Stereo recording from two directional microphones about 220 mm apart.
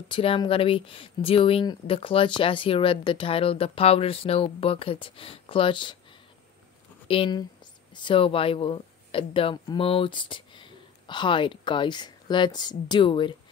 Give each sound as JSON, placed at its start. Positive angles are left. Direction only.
{"t": 0.1, "sound": "speech", "side_deg": 25}